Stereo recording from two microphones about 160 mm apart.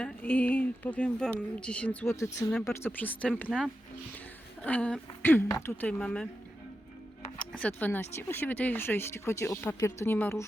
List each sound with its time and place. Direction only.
0.0 s speech: 10° left (ahead or behind)
2.1 s speech: 20° left (ahead or behind)
4.6 s speech: 10° left (ahead or behind)
7.3 s music: 5° left (ahead or behind)
7.8 s speech: 10° left (ahead or behind)